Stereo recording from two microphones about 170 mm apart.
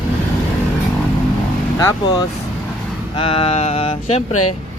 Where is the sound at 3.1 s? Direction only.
30° left (ahead or behind).